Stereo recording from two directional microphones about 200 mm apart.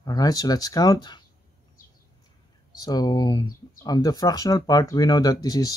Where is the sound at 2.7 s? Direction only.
20° left (ahead or behind).